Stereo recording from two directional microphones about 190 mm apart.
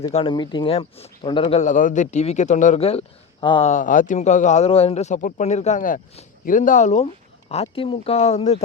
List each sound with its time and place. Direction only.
0.1 s a man's voice: 30° left (ahead or behind)
3.7 s a man's voice: 40° left (ahead or behind)